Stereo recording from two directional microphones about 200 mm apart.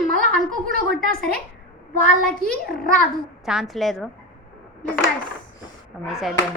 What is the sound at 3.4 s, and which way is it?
Speech, centre (ahead or behind).